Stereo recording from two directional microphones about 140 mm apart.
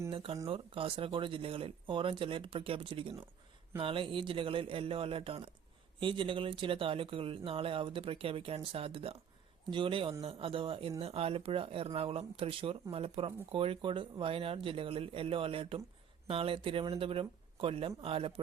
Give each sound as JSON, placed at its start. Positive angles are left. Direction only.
{"t": 0.1, "sound": "speech", "side_deg": -40}